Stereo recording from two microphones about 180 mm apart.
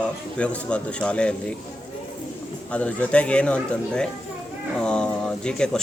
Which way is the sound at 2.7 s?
5° left (ahead or behind).